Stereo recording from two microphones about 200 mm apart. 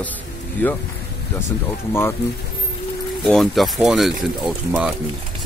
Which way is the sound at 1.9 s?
10° left (ahead or behind).